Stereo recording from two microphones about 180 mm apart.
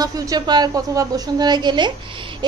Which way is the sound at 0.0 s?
20° right (ahead or behind).